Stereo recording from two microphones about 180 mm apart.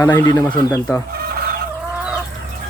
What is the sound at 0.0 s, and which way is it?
Speech, 15° left (ahead or behind).